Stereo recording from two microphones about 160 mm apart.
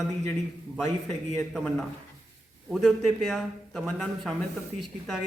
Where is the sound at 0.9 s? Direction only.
40° right (ahead or behind).